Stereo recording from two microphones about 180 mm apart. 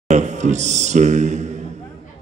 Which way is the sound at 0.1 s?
40° right (ahead or behind).